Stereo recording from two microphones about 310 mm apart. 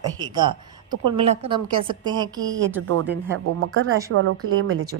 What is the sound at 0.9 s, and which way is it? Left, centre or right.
Speech, right.